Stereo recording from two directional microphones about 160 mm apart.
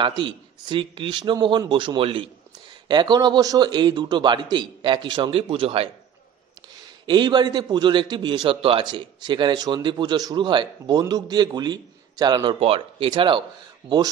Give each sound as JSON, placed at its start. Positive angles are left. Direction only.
{"t": 0.0, "sound": "a man's voice", "side_deg": -30}
{"t": 7.1, "sound": "a man's voice", "side_deg": -30}